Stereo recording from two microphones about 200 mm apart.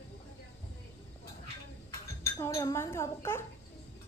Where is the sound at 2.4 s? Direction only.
15° left (ahead or behind).